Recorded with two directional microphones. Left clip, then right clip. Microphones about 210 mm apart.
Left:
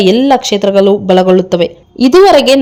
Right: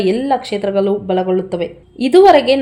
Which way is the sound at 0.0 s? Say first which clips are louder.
Left 7 dB; 35° left (ahead or behind).